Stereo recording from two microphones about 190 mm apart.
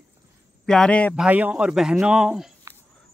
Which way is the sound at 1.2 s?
10° right (ahead or behind).